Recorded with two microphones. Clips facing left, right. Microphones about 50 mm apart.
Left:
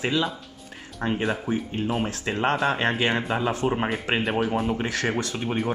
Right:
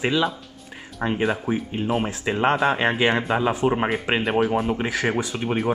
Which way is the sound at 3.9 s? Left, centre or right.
Centre.